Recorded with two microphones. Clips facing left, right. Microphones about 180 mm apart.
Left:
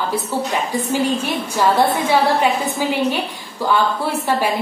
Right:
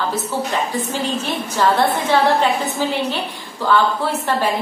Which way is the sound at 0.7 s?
10° left (ahead or behind).